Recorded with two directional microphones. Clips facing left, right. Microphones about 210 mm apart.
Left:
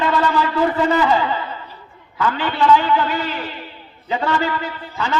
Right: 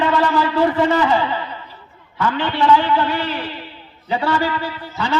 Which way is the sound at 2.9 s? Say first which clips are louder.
Even; 30° right (ahead or behind).